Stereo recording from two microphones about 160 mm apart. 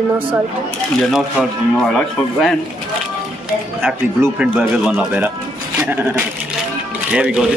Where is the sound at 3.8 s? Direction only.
10° right (ahead or behind).